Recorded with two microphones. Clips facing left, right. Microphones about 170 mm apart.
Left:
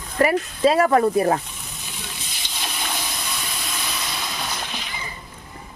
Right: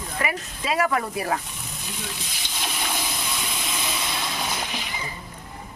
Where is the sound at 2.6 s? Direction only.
5° right (ahead or behind).